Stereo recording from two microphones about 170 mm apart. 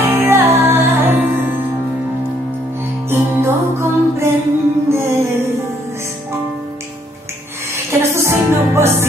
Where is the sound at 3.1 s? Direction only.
15° right (ahead or behind).